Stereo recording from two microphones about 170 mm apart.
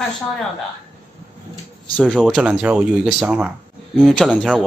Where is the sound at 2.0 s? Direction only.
5° left (ahead or behind).